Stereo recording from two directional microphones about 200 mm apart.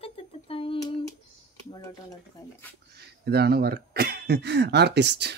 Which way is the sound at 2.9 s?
55° right (ahead or behind).